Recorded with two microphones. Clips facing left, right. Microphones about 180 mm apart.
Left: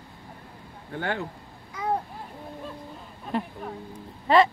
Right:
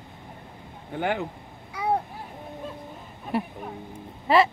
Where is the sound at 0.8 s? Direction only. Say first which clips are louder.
Right 3 dB; 20° right (ahead or behind).